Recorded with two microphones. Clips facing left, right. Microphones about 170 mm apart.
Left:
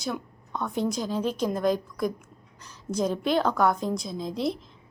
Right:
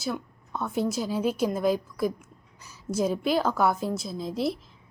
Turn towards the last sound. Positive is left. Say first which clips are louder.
# even
turn(degrees=-5)  # may be behind; listen again after turning